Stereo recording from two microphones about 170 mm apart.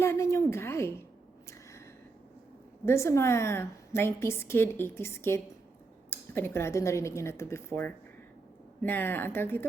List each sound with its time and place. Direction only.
0.0 s a woman's voice: 15° left (ahead or behind)
2.8 s a woman's voice: 15° left (ahead or behind)